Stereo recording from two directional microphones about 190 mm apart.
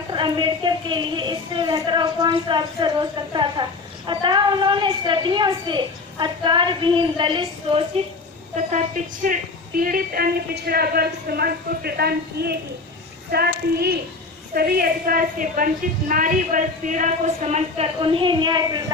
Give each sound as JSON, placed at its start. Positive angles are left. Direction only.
{"t": 0.1, "sound": "a woman's voice", "side_deg": -25}
{"t": 9.2, "sound": "a woman's voice", "side_deg": -45}